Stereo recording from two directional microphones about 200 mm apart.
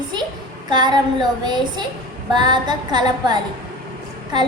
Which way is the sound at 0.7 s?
20° right (ahead or behind).